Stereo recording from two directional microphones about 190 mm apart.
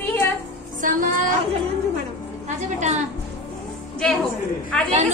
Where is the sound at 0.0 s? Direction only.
10° left (ahead or behind).